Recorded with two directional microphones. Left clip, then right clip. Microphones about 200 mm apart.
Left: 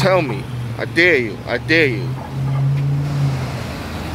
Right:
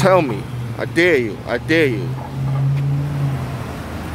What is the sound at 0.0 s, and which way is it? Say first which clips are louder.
Speech: right 2 dB; 30° right (ahead or behind).